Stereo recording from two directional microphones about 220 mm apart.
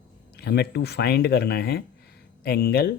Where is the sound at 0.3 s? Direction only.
50° left (ahead or behind).